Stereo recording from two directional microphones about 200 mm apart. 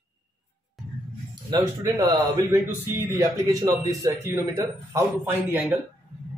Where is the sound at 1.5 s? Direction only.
20° right (ahead or behind).